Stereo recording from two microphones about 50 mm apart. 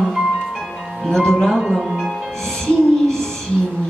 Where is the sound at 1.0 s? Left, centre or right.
Centre.